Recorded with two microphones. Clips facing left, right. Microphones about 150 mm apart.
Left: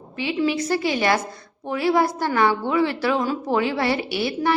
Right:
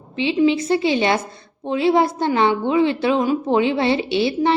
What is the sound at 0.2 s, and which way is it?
A woman's voice, 20° right (ahead or behind).